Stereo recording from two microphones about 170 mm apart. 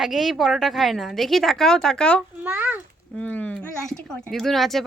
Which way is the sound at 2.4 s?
10° right (ahead or behind).